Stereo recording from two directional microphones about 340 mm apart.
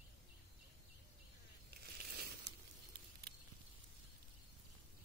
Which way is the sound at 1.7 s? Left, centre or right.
Right.